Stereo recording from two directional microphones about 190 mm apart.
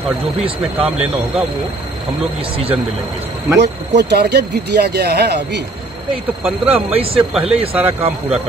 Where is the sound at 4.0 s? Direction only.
60° right (ahead or behind).